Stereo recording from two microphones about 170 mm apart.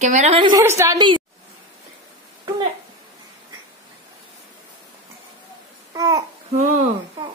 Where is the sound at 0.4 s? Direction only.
25° right (ahead or behind).